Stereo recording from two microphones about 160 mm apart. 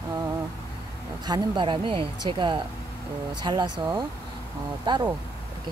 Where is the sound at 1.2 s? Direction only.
30° right (ahead or behind).